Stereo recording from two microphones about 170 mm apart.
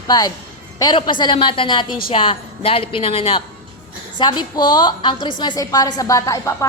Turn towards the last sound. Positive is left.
turn(degrees=20)  # may be behind; listen again after turning